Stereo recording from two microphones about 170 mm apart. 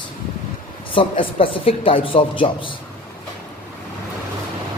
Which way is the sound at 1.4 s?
30° left (ahead or behind).